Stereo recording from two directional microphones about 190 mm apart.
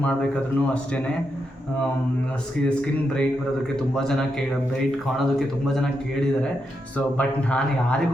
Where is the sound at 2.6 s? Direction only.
5° left (ahead or behind).